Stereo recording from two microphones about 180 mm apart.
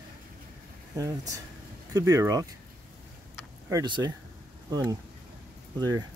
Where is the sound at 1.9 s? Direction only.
20° right (ahead or behind).